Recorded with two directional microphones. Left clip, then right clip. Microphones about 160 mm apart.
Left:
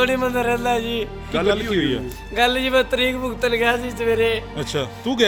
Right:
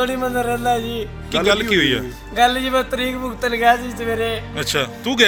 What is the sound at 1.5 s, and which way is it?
Speech, 5° left (ahead or behind).